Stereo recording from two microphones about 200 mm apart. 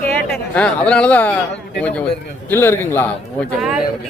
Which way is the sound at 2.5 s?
10° left (ahead or behind).